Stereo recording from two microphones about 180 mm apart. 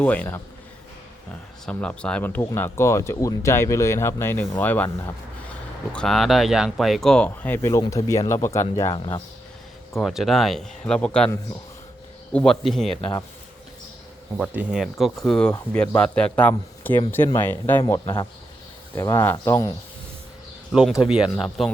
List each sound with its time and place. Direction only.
0.0 s speech: 10° left (ahead or behind)
1.6 s speech: 5° left (ahead or behind); by 9.2 s 25° left (ahead or behind)
9.9 s speech: centre (ahead or behind)
14.3 s speech: 5° right (ahead or behind); by 19.7 s 15° left (ahead or behind)
20.7 s speech: 5° right (ahead or behind)